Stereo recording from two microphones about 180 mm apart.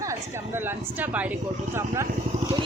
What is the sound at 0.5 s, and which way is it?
Speech, 10° right (ahead or behind).